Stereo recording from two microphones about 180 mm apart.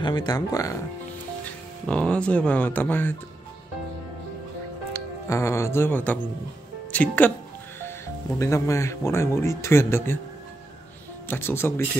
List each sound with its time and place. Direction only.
0.0 s speech: 25° left (ahead or behind)
1.9 s speech: 5° left (ahead or behind)
4.9 s a woman's voice: 15° left (ahead or behind)
8.4 s speech: 15° left (ahead or behind)
11.2 s speech: 10° left (ahead or behind)